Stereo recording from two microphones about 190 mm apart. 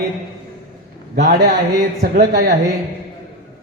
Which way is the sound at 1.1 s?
60° right (ahead or behind).